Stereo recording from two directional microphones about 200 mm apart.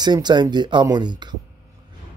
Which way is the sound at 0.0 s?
20° right (ahead or behind).